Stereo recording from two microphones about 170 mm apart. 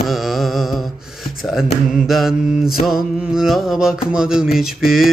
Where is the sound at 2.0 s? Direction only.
Centre (ahead or behind).